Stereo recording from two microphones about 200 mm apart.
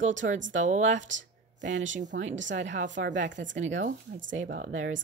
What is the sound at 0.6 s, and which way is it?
Speech, 35° right (ahead or behind).